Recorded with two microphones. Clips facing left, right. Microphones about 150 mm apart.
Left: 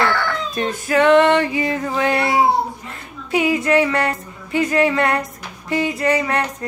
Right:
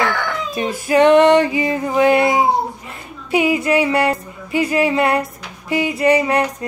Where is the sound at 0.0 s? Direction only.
15° right (ahead or behind).